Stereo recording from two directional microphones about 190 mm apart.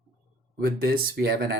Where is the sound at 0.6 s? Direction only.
50° right (ahead or behind).